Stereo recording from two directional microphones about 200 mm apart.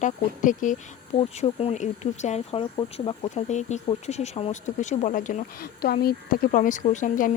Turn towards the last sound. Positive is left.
turn(degrees=40)  # may be behind; listen again after turning